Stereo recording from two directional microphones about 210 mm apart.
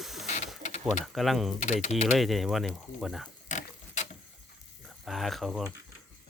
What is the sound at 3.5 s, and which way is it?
Pig, 35° left (ahead or behind).